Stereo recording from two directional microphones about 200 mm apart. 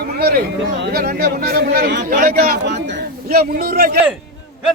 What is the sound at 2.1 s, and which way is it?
A man's voice, 45° right (ahead or behind).